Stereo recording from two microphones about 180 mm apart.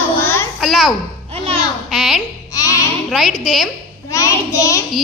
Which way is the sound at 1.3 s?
35° right (ahead or behind).